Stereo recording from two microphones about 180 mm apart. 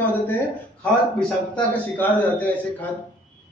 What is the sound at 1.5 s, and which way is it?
A man's voice, 10° left (ahead or behind).